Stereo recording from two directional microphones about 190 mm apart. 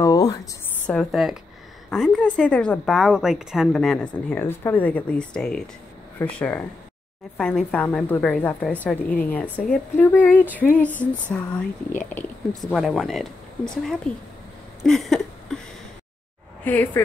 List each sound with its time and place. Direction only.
0.0 s a sound: 20° left (ahead or behind)
0.8 s a woman's voice: centre (ahead or behind)
10.4 s female singing: 10° right (ahead or behind)
10.8 s a woman's voice: 10° left (ahead or behind)
12.7 s a woman's voice: centre (ahead or behind)
14.8 s a sound: centre (ahead or behind)
16.6 s a woman's voice: 10° left (ahead or behind)